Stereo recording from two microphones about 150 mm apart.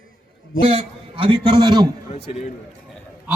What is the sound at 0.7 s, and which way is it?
A man's voice, 40° right (ahead or behind).